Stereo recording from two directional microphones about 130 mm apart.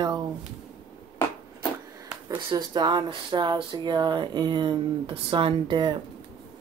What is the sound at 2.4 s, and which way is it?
Speech, 35° right (ahead or behind).